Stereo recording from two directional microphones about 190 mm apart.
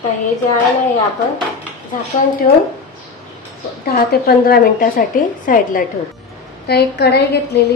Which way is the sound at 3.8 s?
55° left (ahead or behind).